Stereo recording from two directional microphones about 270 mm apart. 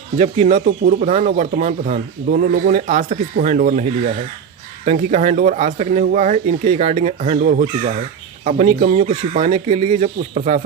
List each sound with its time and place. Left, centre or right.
0.2 s speech: right
4.9 s speech: right